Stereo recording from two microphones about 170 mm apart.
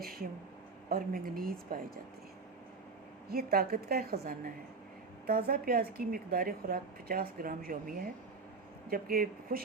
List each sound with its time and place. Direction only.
0.0 s speech: 60° right (ahead or behind)
3.2 s speech: 65° right (ahead or behind)